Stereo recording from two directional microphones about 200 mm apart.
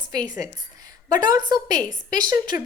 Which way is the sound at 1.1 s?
20° right (ahead or behind).